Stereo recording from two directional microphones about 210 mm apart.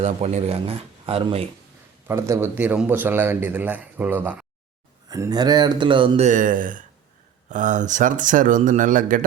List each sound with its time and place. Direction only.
0.0 s speech: 30° right (ahead or behind)
2.0 s a man's voice: 15° right (ahead or behind); by 9.2 s 40° right (ahead or behind)